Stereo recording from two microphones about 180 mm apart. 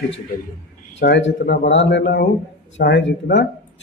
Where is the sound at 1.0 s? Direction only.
75° left (ahead or behind).